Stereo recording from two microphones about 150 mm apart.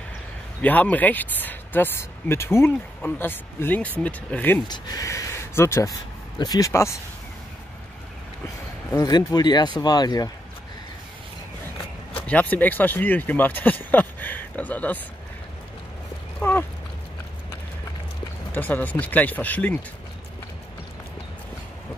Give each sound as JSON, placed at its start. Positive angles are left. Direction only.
{"t": 0.6, "sound": "speech", "side_deg": 10}
{"t": 4.6, "sound": "speech", "side_deg": 25}
{"t": 8.9, "sound": "speech", "side_deg": 25}
{"t": 12.3, "sound": "speech", "side_deg": 10}
{"t": 16.3, "sound": "horse", "side_deg": 10}
{"t": 18.5, "sound": "speech", "side_deg": 10}